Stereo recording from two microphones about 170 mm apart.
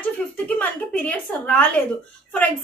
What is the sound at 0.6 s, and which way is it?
A woman's voice, 10° left (ahead or behind).